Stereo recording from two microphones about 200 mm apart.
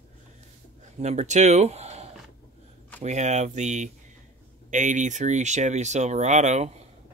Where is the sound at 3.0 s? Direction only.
35° right (ahead or behind).